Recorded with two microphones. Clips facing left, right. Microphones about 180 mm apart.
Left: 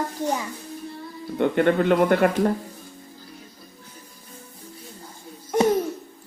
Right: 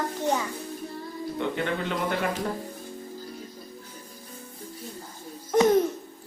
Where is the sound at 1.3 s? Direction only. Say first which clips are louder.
Left 10 dB; 55° left (ahead or behind).